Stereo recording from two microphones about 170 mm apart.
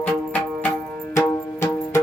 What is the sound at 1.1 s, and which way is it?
Music, 15° left (ahead or behind).